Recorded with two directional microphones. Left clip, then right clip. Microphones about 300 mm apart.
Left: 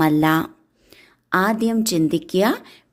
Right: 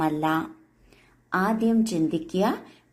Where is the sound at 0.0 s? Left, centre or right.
Left.